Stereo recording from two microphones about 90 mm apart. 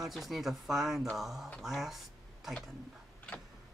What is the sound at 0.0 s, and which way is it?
Speech, centre (ahead or behind).